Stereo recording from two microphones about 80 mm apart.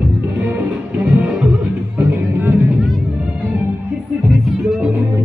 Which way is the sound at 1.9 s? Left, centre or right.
Right.